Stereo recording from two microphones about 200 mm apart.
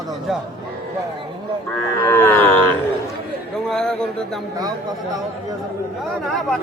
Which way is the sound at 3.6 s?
5° left (ahead or behind).